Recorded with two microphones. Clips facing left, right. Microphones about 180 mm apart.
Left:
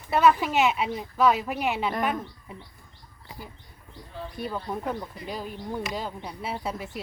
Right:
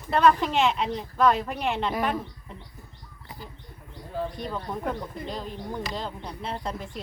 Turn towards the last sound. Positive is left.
turn(degrees=5)  # may be behind; listen again after turning